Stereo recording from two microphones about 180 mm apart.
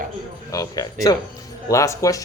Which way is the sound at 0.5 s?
20° left (ahead or behind).